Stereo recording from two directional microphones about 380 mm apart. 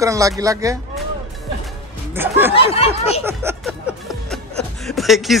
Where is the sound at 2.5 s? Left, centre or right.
Centre.